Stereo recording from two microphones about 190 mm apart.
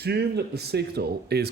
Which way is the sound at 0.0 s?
60° right (ahead or behind).